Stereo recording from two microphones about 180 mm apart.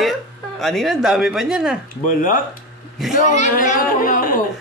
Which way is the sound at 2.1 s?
50° left (ahead or behind).